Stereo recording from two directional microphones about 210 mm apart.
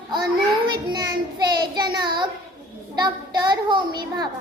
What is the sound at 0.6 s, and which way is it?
Child singing, 20° right (ahead or behind).